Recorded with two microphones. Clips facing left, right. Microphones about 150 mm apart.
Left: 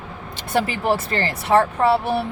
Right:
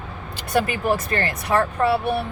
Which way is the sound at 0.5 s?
30° left (ahead or behind).